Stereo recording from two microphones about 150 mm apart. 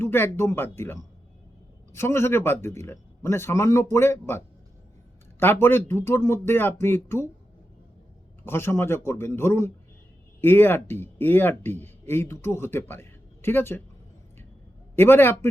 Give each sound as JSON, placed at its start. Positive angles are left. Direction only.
{"t": 0.0, "sound": "speech", "side_deg": 15}
{"t": 8.4, "sound": "speech", "side_deg": 15}
{"t": 14.9, "sound": "speech", "side_deg": 15}